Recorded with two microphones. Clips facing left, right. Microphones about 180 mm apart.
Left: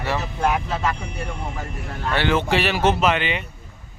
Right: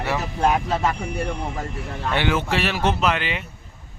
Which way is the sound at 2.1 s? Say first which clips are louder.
Left 2 dB; 10° right (ahead or behind).